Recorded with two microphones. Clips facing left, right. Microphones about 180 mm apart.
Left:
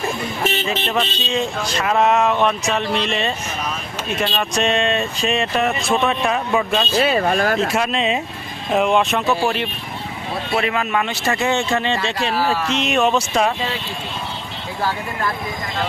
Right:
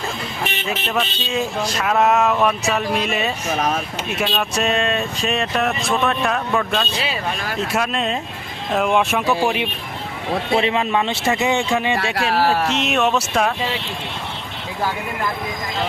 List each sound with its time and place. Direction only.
0.6 s speech: centre (ahead or behind)
7.0 s speech: 50° left (ahead or behind)
7.7 s speech: centre (ahead or behind)
10.6 s speech: 25° right (ahead or behind)
11.3 s speech: 15° right (ahead or behind)
12.7 s speech: centre (ahead or behind)